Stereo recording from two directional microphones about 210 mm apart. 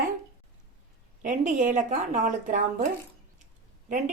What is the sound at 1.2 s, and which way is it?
A woman's voice, 40° right (ahead or behind).